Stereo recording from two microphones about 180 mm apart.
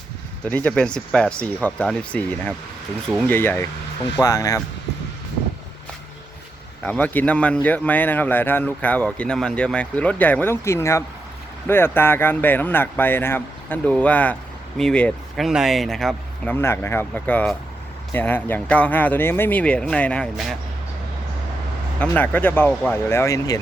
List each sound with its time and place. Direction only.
0.4 s speech: 5° left (ahead or behind)
6.8 s speech: 10° left (ahead or behind)
22.0 s speech: 10° left (ahead or behind)